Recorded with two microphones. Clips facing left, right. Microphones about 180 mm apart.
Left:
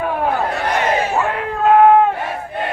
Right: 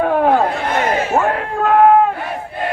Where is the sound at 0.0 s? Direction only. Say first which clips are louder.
Right 6 dB; 55° right (ahead or behind).